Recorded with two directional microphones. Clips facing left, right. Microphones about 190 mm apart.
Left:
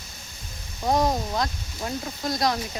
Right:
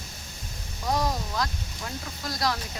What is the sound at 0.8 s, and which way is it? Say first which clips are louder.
Speech: left 5 dB; 25° left (ahead or behind).